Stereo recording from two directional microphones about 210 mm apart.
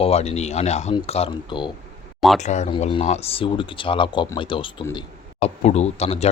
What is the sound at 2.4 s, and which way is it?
Speech, 35° left (ahead or behind).